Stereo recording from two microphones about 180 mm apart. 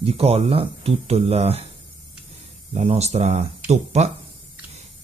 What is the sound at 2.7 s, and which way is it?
Speech, 35° right (ahead or behind).